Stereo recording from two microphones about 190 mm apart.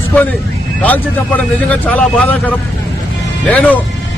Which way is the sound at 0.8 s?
10° left (ahead or behind).